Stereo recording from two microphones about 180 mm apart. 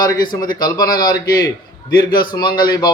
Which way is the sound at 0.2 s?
25° left (ahead or behind).